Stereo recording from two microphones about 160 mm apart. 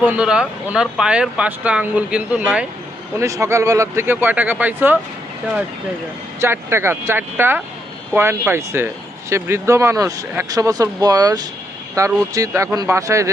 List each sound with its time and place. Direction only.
0.0 s speech: 5° right (ahead or behind)
3.2 s speech: 20° right (ahead or behind)
6.4 s speech: 15° right (ahead or behind)